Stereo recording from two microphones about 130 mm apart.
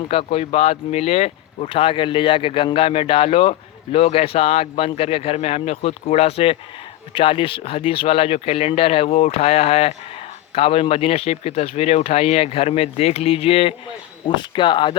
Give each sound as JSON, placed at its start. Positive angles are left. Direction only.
{"t": 0.1, "sound": "speech", "side_deg": 45}